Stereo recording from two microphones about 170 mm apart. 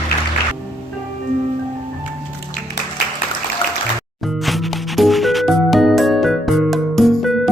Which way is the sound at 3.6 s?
35° left (ahead or behind).